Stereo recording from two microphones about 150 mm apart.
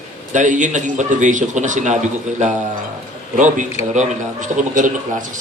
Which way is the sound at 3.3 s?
55° right (ahead or behind).